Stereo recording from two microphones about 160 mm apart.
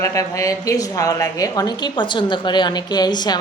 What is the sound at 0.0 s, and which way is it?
A woman's voice, 20° left (ahead or behind).